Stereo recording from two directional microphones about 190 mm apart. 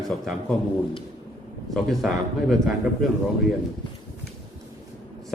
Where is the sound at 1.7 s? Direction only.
Centre (ahead or behind).